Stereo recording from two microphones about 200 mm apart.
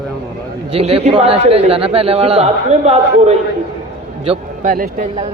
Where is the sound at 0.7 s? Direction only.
30° right (ahead or behind).